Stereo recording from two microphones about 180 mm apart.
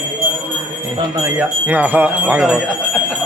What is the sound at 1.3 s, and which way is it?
Speech, 10° right (ahead or behind).